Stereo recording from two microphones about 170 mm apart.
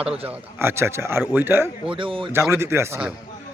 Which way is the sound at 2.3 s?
15° right (ahead or behind).